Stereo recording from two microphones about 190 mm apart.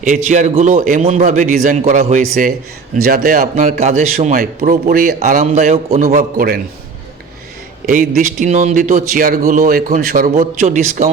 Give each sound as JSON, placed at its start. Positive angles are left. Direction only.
{"t": 0.0, "sound": "a man's voice", "side_deg": -40}
{"t": 2.2, "sound": "a man's voice", "side_deg": -50}
{"t": 6.0, "sound": "a man's voice", "side_deg": -50}
{"t": 7.9, "sound": "a man's voice", "side_deg": -45}